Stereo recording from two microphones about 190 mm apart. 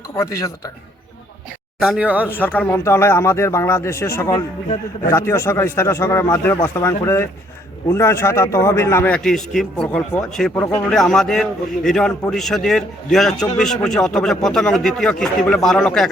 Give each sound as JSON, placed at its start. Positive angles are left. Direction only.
{"t": 0.2, "sound": "speech", "side_deg": 15}
{"t": 1.8, "sound": "speech", "side_deg": -5}
{"t": 2.3, "sound": "a man's voice", "side_deg": 10}